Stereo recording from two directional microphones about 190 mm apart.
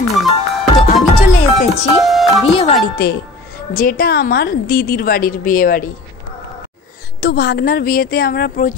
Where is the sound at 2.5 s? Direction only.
30° left (ahead or behind).